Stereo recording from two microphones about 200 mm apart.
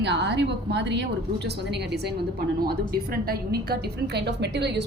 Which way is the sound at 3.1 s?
50° right (ahead or behind).